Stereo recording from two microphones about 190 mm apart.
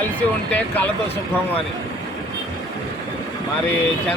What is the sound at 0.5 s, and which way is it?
Speech, 10° left (ahead or behind).